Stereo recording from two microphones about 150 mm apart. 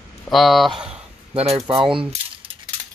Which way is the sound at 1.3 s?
40° right (ahead or behind).